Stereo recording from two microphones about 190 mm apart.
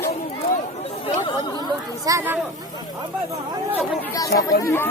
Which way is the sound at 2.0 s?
15° right (ahead or behind).